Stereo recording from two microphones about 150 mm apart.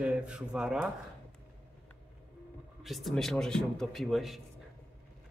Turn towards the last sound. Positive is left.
turn(degrees=0)  # may be behind; listen again after turning